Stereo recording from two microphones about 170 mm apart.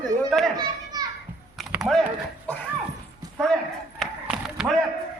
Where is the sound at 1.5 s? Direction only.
Centre (ahead or behind).